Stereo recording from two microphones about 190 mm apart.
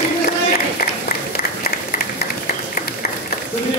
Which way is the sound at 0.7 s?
50° left (ahead or behind).